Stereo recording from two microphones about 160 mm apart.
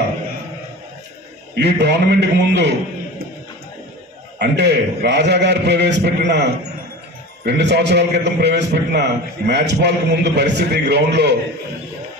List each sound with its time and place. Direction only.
1.6 s a man's voice: 90° right
4.4 s a man's voice: 90° right